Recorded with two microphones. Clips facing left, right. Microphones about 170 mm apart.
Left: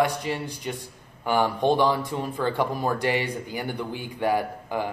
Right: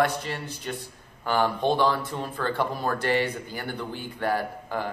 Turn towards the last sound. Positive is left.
turn(degrees=15)  # may be behind; listen again after turning